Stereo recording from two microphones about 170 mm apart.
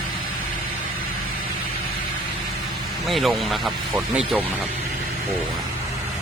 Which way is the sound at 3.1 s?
Centre (ahead or behind).